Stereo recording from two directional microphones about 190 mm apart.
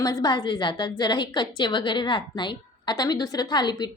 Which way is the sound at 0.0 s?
20° left (ahead or behind).